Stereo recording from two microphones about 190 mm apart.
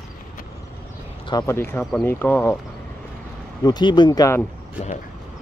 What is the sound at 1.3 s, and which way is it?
Speech, 15° left (ahead or behind).